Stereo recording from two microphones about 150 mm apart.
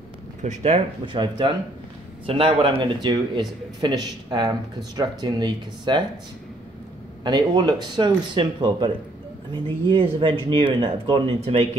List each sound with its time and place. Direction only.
0.4 s speech: 50° right (ahead or behind)
1.0 s speech: 30° right (ahead or behind)
7.2 s speech: 30° right (ahead or behind)